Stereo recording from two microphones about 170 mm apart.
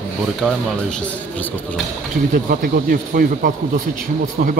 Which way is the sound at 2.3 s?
55° right (ahead or behind).